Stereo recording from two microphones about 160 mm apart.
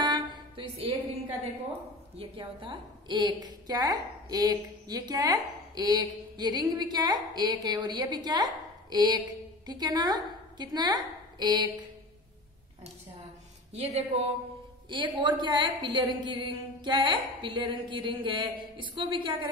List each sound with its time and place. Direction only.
0.0 s music: 30° right (ahead or behind)
2.1 s a woman's voice: 30° right (ahead or behind)
13.7 s speech: 40° right (ahead or behind)
14.9 s a woman's voice: 30° right (ahead or behind)